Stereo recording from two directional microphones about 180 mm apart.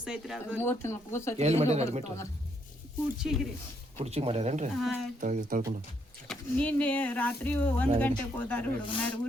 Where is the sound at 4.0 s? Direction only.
35° right (ahead or behind).